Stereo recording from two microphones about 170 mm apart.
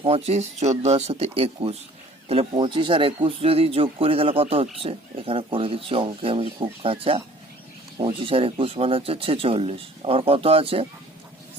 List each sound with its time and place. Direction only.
0.0 s speech: 40° right (ahead or behind)